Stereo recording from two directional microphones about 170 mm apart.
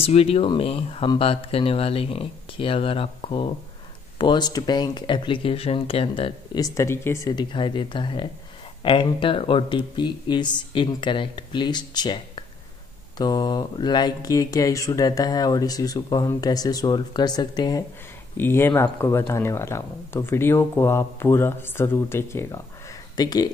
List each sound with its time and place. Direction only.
0.0 s speech: 35° left (ahead or behind)